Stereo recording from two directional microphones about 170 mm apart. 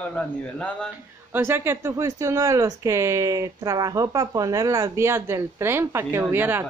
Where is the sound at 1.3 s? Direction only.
15° right (ahead or behind).